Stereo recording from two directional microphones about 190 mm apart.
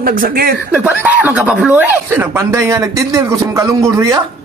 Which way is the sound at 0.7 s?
10° right (ahead or behind).